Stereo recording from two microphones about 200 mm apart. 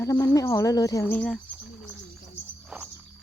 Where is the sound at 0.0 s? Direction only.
15° left (ahead or behind).